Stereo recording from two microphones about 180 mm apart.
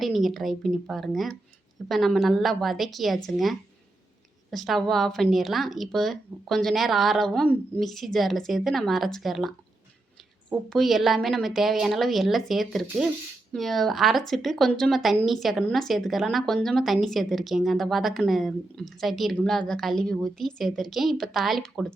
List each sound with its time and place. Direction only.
0.0 s speech: centre (ahead or behind)
10.5 s speech: centre (ahead or behind)